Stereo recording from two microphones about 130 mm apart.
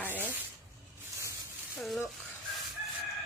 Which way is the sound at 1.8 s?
Centre (ahead or behind).